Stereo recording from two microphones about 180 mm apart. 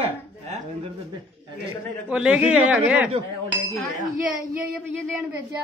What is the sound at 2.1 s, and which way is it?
Speech, 5° right (ahead or behind).